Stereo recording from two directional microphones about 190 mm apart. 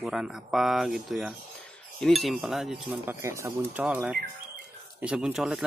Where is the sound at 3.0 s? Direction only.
15° right (ahead or behind).